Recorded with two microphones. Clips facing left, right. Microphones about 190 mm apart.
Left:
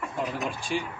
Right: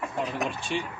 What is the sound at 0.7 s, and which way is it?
Speech, 5° left (ahead or behind).